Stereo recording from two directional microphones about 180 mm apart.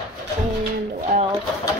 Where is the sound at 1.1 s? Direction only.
35° right (ahead or behind).